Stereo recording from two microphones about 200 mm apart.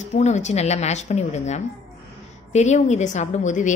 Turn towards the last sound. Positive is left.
turn(degrees=40)  # may be behind; listen again after turning